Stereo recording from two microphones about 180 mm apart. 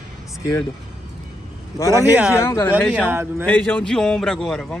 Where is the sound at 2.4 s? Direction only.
15° left (ahead or behind).